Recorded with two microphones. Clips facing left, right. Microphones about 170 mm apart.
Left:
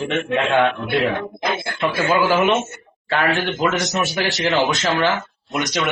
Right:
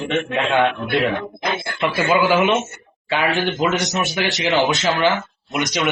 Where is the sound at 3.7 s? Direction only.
Centre (ahead or behind).